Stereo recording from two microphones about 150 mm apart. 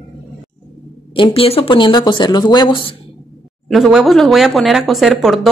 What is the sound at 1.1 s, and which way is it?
Speech, 35° left (ahead or behind).